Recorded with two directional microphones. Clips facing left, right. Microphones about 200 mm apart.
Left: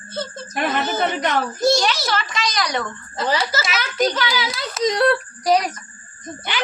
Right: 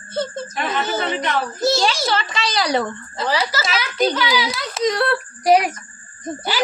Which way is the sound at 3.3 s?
25° left (ahead or behind).